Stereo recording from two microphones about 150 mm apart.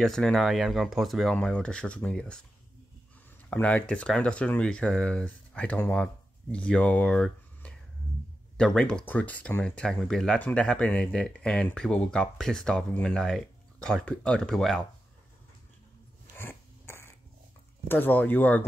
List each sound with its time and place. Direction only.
0.0 s speech: 5° left (ahead or behind)
3.4 s speech: 10° left (ahead or behind)
16.3 s a sound: 15° left (ahead or behind)
17.8 s speech: 10° left (ahead or behind)